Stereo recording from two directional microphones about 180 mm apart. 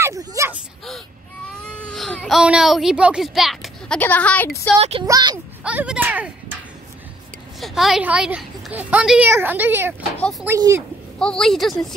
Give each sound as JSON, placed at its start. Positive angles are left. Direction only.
{"t": 0.0, "sound": "a sound", "side_deg": -20}
{"t": 1.6, "sound": "baby cry", "side_deg": 5}
{"t": 4.0, "sound": "a woman's voice", "side_deg": 10}
{"t": 4.7, "sound": "speech", "side_deg": -35}
{"t": 5.0, "sound": "speech", "side_deg": -20}
{"t": 5.6, "sound": "speech", "side_deg": -5}
{"t": 7.6, "sound": "speech", "side_deg": 0}
{"t": 11.1, "sound": "a woman's voice", "side_deg": 5}